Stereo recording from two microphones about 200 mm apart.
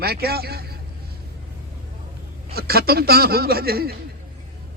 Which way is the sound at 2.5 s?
50° right (ahead or behind).